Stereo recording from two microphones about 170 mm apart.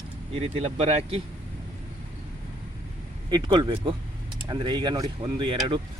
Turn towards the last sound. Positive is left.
turn(degrees=-30)  # may be behind; listen again after turning